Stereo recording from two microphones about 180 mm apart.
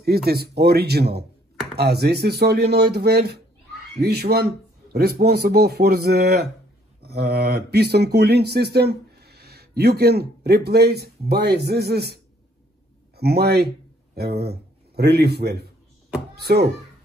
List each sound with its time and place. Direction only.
0.0 s a man's voice: 60° right (ahead or behind)